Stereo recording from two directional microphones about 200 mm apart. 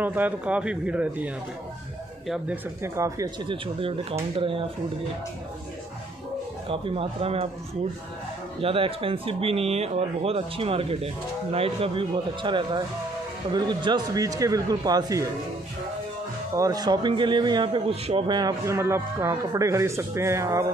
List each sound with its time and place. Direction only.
0.0 s a man's voice: 10° right (ahead or behind); by 4.6 s 25° right (ahead or behind)
6.7 s speech: 25° right (ahead or behind)
8.5 s speech: 25° right (ahead or behind)
16.5 s a man's voice: 20° right (ahead or behind)